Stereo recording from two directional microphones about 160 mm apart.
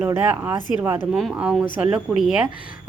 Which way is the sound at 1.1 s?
5° right (ahead or behind).